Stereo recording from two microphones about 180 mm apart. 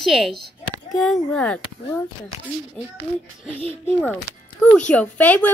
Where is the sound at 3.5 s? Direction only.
35° left (ahead or behind).